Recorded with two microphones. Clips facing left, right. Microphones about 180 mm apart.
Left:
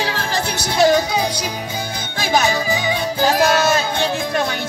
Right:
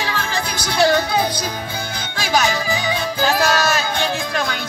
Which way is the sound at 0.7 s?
15° left (ahead or behind).